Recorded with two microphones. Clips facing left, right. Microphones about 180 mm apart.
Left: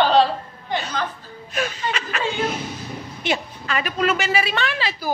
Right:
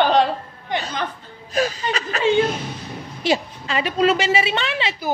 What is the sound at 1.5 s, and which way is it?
Chuckle, 35° right (ahead or behind).